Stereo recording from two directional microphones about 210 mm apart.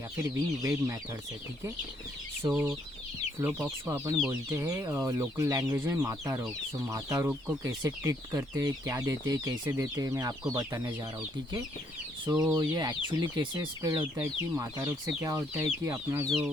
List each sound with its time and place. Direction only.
0.3 s speech: 15° right (ahead or behind)
2.4 s speech: 10° right (ahead or behind)
12.2 s speech: 20° right (ahead or behind)